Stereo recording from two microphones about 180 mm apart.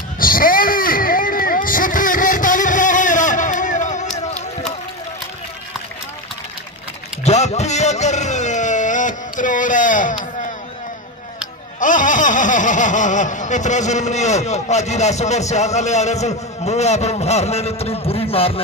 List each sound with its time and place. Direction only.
0.2 s vehicle: 50° left (ahead or behind)
7.2 s a sound: 40° left (ahead or behind)
11.8 s speech: 45° left (ahead or behind)